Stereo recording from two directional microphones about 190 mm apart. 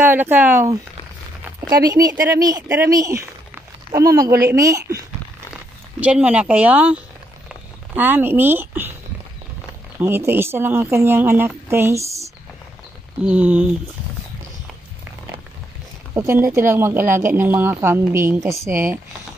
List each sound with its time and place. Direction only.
0.0 s speech: 10° right (ahead or behind)
1.9 s speech: 20° right (ahead or behind)
3.5 s a sound: 15° right (ahead or behind)
4.5 s speech: 15° right (ahead or behind)
9.9 s speech: 10° right (ahead or behind)
13.2 s speech: 5° right (ahead or behind)
16.2 s speech: 15° right (ahead or behind)